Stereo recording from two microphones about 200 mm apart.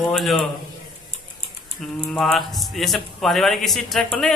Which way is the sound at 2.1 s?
Centre (ahead or behind).